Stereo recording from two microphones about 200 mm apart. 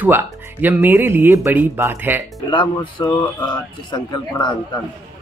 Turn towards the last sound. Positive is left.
turn(degrees=20)  # may be behind; listen again after turning